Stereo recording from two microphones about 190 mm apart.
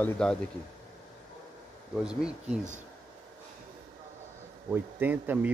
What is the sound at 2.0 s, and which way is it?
Speech, 5° right (ahead or behind).